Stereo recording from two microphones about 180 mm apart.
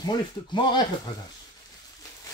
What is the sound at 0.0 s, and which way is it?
Speech, 25° left (ahead or behind).